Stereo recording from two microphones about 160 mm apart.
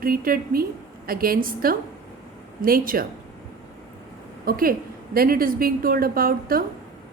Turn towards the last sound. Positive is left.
turn(degrees=-65)  # may be behind; listen again after turning